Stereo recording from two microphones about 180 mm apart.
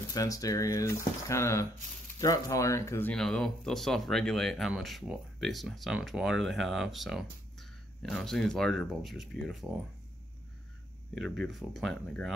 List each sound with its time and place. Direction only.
0.1 s speech: 20° left (ahead or behind); by 9.7 s centre (ahead or behind)
11.1 s speech: 5° left (ahead or behind)